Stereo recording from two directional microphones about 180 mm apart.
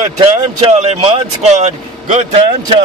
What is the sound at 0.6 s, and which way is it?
Speech, 35° right (ahead or behind).